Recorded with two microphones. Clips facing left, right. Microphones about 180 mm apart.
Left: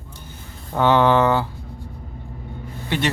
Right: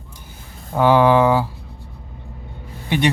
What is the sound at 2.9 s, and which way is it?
Speech, 15° right (ahead or behind).